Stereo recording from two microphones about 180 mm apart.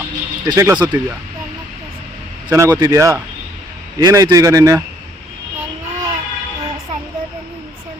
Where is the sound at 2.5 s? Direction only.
20° right (ahead or behind).